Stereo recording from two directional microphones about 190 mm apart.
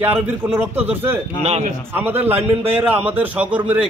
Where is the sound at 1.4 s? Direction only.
35° right (ahead or behind).